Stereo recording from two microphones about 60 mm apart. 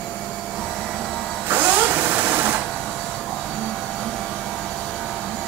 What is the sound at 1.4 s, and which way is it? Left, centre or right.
Sewing machine, right.